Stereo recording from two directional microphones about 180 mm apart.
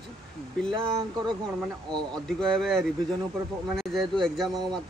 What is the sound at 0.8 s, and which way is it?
Speech, 25° right (ahead or behind).